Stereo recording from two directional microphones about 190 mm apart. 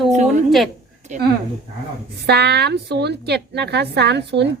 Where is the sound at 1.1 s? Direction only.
40° right (ahead or behind).